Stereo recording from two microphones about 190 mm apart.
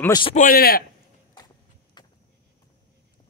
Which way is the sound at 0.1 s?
25° left (ahead or behind).